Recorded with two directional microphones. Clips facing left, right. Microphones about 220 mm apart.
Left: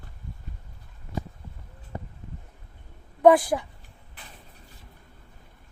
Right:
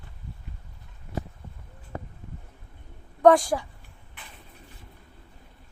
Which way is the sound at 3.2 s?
5° left (ahead or behind).